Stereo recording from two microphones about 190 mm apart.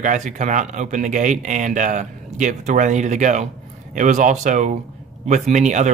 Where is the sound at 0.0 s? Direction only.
40° right (ahead or behind).